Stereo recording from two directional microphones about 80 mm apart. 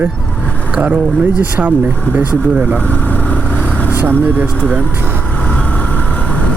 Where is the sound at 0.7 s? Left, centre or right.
Centre.